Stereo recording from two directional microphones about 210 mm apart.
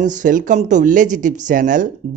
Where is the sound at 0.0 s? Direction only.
35° right (ahead or behind).